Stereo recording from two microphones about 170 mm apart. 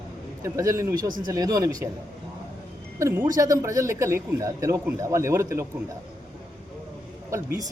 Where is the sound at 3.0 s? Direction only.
15° right (ahead or behind).